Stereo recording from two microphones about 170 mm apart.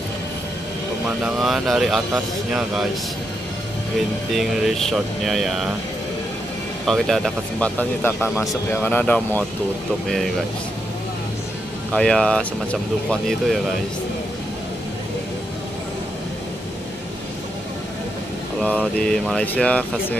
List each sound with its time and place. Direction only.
1.0 s speech: 5° right (ahead or behind)
4.3 s speech: centre (ahead or behind)
6.9 s speech: centre (ahead or behind)
11.9 s speech: 5° left (ahead or behind)
18.6 s speech: 5° left (ahead or behind)